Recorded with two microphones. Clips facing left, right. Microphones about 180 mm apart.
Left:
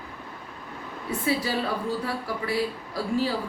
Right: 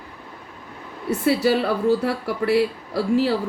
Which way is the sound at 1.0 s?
75° right (ahead or behind).